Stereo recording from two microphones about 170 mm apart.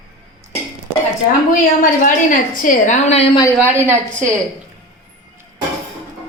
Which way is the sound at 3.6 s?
10° right (ahead or behind).